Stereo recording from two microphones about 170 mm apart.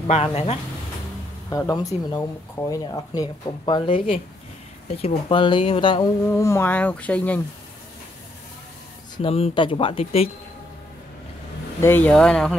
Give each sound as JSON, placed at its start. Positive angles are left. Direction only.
{"t": 0.0, "sound": "speech", "side_deg": 35}
{"t": 1.5, "sound": "speech", "side_deg": 20}
{"t": 6.2, "sound": "speech", "side_deg": 15}
{"t": 9.1, "sound": "speech", "side_deg": 35}
{"t": 11.8, "sound": "speech", "side_deg": 10}